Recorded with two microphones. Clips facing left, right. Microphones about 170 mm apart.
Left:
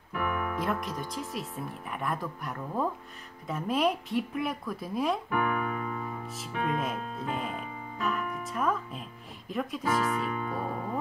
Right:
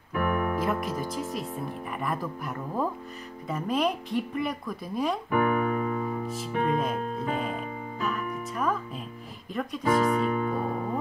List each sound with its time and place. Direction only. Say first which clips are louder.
0.1 s music: right 5 dB; 50° right (ahead or behind)
0.6 s speech: right 3 dB; centre (ahead or behind)
5.3 s speech: right 5 dB; 50° right (ahead or behind)
6.2 s speech: right 2 dB; centre (ahead or behind)
10.0 s music: right 6 dB; 55° right (ahead or behind)